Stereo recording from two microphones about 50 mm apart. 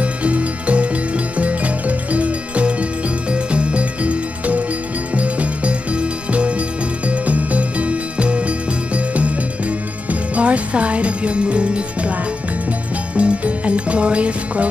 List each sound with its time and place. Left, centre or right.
0.0 s music: right
10.3 s music: right
13.1 s music: right